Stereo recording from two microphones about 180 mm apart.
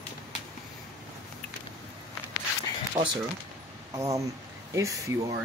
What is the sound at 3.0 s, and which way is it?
Speech, 20° right (ahead or behind).